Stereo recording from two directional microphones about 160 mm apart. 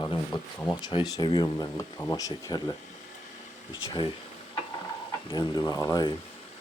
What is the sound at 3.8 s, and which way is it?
Speech, 30° left (ahead or behind).